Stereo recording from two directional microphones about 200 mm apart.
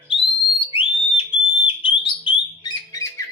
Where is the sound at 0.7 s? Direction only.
25° left (ahead or behind).